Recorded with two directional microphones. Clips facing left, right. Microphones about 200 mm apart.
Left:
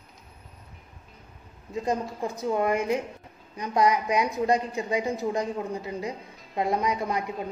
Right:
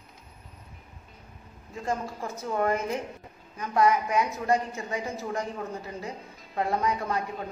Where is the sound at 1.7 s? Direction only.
20° left (ahead or behind).